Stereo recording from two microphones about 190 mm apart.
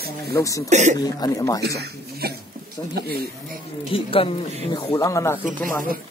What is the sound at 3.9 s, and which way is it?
Speech, 30° left (ahead or behind).